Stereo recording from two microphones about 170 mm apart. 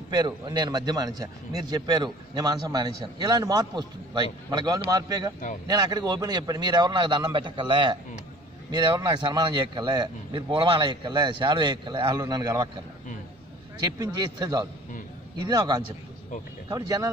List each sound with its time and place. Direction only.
0.1 s a man's voice: 25° right (ahead or behind)